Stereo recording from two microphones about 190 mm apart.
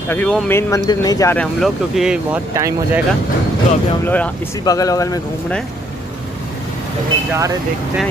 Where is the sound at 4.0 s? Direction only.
10° left (ahead or behind).